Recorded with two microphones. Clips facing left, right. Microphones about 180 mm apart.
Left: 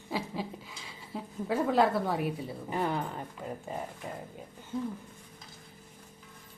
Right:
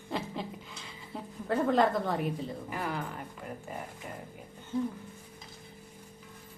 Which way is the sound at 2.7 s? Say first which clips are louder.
Left 7 dB; 25° left (ahead or behind).